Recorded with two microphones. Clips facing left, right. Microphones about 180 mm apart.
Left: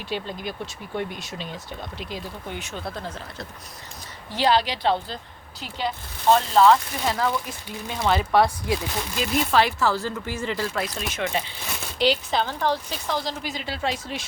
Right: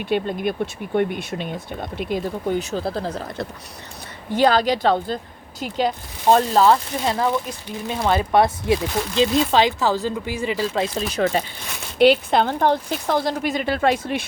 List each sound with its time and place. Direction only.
0.0 s speech: 60° right (ahead or behind)
2.6 s speech: 35° right (ahead or behind)
4.3 s speech: 50° right (ahead or behind)
7.1 s speech: 20° right (ahead or behind)
10.8 s speech: 35° right (ahead or behind)
11.9 s speech: 55° right (ahead or behind)